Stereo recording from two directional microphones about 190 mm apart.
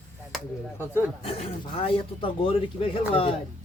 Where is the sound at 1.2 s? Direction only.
30° left (ahead or behind).